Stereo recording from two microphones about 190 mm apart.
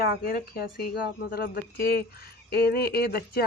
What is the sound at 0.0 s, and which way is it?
Speech, 55° left (ahead or behind).